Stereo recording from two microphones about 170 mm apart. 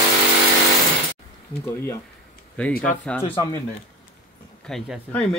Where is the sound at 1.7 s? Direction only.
15° left (ahead or behind).